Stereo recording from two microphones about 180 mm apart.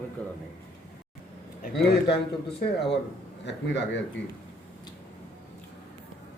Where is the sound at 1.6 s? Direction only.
65° left (ahead or behind).